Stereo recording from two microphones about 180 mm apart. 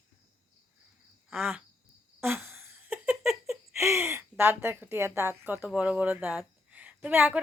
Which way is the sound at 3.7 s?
15° right (ahead or behind).